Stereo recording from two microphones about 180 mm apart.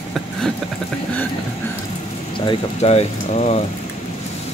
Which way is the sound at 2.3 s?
30° left (ahead or behind).